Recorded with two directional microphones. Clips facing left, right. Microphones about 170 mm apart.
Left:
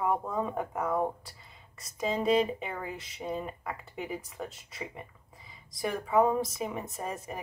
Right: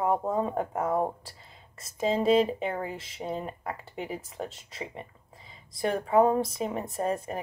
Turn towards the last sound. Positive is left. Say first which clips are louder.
# right 7 dB
turn(degrees=-30)  # may be behind; listen again after turning